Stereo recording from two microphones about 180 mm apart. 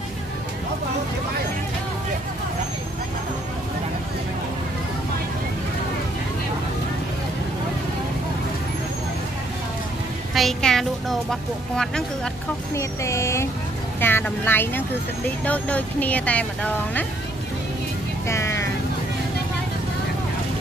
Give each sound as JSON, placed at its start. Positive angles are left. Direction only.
{"t": 10.3, "sound": "speech", "side_deg": 0}
{"t": 12.7, "sound": "speech", "side_deg": 15}
{"t": 18.3, "sound": "vehicle", "side_deg": 15}